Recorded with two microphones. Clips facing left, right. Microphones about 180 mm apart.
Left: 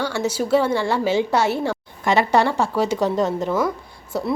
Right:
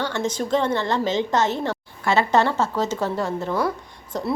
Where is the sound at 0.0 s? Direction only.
10° left (ahead or behind).